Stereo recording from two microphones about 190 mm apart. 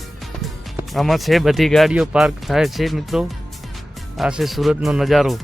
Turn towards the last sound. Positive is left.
turn(degrees=0)  # may be behind; listen again after turning